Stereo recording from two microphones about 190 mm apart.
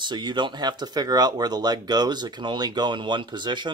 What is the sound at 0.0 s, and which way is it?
Speech, 25° right (ahead or behind).